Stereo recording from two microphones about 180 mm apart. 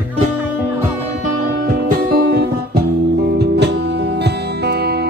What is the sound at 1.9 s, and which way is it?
Music, 60° right (ahead or behind).